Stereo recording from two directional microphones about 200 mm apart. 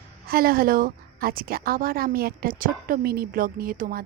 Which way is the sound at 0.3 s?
50° right (ahead or behind).